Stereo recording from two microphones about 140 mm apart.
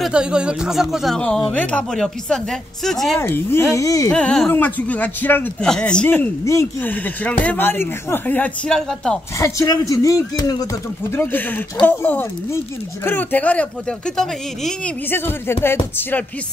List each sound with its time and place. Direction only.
0.0 s speech: 5° right (ahead or behind)
3.2 s speech: 15° left (ahead or behind)
4.1 s speech: 5° left (ahead or behind)
9.4 s speech: 20° left (ahead or behind); by 14.7 s centre (ahead or behind)
15.0 s speech: 15° left (ahead or behind)